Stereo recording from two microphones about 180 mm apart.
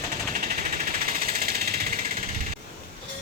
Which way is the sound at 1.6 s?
60° right (ahead or behind).